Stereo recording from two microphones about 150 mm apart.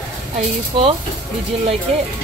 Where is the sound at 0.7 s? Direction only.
40° right (ahead or behind).